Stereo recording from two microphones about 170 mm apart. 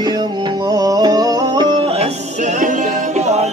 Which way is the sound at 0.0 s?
25° right (ahead or behind).